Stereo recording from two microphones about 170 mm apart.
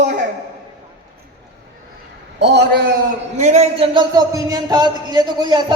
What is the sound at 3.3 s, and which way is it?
Speech, 40° right (ahead or behind).